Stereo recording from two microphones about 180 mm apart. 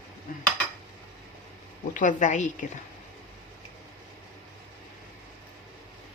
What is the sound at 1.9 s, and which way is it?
Speech, 45° left (ahead or behind).